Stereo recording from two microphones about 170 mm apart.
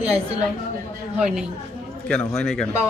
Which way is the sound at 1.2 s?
5° right (ahead or behind).